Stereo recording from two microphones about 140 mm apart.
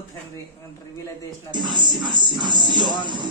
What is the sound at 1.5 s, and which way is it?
Music, 30° right (ahead or behind).